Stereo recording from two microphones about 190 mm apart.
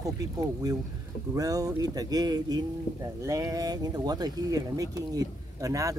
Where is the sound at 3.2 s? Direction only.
15° right (ahead or behind).